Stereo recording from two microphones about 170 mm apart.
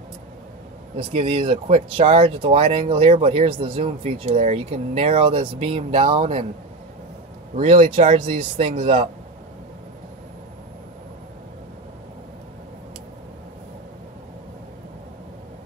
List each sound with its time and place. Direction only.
0.9 s speech: 35° right (ahead or behind)
7.6 s speech: 35° right (ahead or behind)